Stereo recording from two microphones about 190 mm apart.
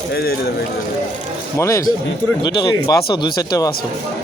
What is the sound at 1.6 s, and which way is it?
Speech, 15° left (ahead or behind).